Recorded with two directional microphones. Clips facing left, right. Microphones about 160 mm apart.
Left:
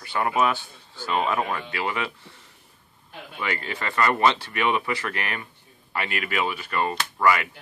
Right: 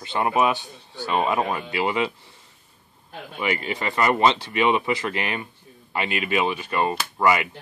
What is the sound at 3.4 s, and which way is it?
Speech, 20° right (ahead or behind).